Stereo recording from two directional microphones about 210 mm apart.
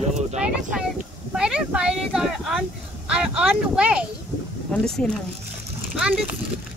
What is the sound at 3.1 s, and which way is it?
Speech, 5° right (ahead or behind).